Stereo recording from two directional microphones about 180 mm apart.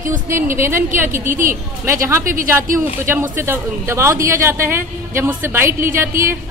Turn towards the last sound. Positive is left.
turn(degrees=-15)  # may be behind; listen again after turning